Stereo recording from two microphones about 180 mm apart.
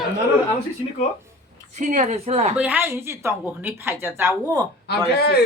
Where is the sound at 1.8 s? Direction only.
40° right (ahead or behind).